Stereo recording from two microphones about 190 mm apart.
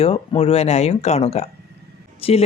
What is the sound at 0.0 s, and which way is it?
Speech, 30° left (ahead or behind).